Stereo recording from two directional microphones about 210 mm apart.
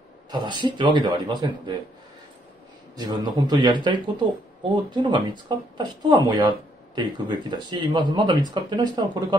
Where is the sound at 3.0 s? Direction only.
20° right (ahead or behind).